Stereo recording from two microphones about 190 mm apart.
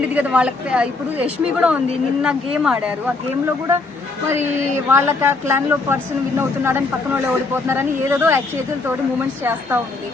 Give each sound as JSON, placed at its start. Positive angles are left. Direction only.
{"t": 0.1, "sound": "a woman's voice", "side_deg": -5}
{"t": 2.2, "sound": "a woman's voice", "side_deg": -5}
{"t": 4.9, "sound": "speech", "side_deg": -10}
{"t": 9.4, "sound": "speech", "side_deg": -10}